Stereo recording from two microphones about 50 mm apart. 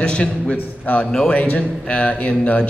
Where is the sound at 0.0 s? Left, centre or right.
Centre.